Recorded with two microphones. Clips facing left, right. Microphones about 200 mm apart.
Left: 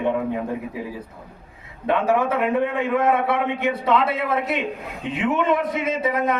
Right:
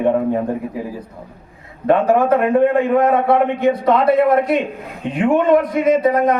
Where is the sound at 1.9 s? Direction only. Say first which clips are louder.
Right 6 dB; 55° right (ahead or behind).